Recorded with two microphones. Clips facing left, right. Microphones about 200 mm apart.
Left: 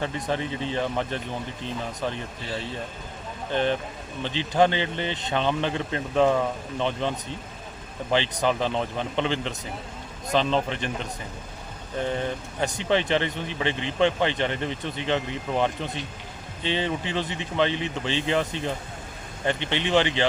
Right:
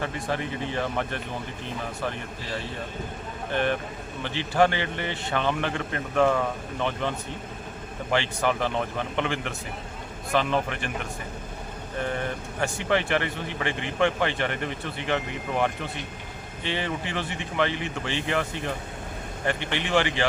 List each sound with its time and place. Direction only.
0.0 s speech: 20° left (ahead or behind)
3.5 s speech: 20° left (ahead or behind)
8.1 s speech: 20° left (ahead or behind)